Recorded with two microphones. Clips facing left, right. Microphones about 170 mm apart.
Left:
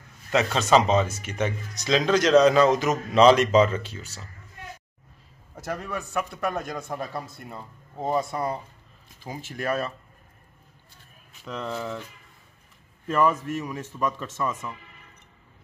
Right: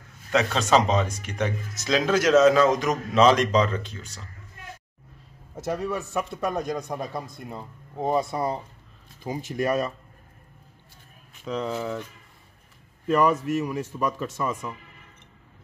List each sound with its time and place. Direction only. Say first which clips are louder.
0.3 s speech: left 1 dB; centre (ahead or behind)
5.6 s a man's voice: right 4 dB; 20° right (ahead or behind)
7.1 s speech: right 1 dB; 5° left (ahead or behind)
7.5 s a man's voice: right 4 dB; 20° right (ahead or behind)
11.4 s speech: right 3 dB; 5° right (ahead or behind)
13.0 s a man's voice: right 2 dB; 5° right (ahead or behind)